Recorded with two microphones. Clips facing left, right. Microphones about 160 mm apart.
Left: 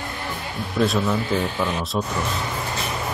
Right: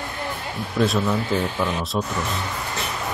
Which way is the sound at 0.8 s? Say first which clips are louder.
Even; centre (ahead or behind).